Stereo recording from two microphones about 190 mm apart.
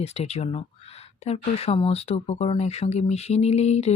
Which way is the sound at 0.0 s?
35° left (ahead or behind).